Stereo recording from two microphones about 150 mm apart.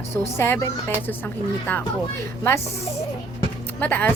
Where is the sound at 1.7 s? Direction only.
10° left (ahead or behind).